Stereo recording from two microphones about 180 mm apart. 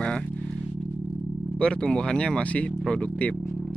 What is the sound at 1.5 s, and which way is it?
Speech, 5° left (ahead or behind).